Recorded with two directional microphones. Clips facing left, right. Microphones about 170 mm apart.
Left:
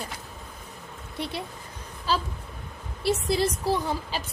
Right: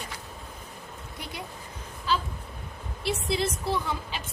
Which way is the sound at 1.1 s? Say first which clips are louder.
Left 9 dB; 30° left (ahead or behind).